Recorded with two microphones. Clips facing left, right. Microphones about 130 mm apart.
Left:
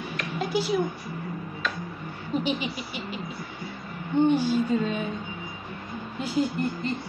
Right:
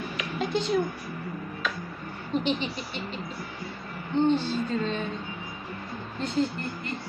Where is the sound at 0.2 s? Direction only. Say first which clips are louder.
Left 1 dB; 5° left (ahead or behind).